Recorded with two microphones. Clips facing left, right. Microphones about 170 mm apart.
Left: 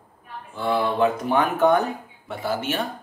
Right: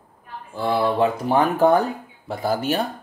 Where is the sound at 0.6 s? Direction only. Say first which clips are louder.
Right 2 dB; 35° right (ahead or behind).